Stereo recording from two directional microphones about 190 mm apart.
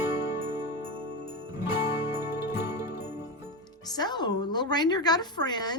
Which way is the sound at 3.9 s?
20° left (ahead or behind).